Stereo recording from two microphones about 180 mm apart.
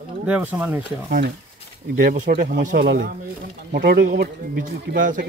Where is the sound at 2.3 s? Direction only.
65° right (ahead or behind).